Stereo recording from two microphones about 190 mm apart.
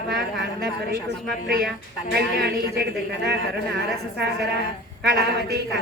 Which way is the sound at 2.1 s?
60° right (ahead or behind).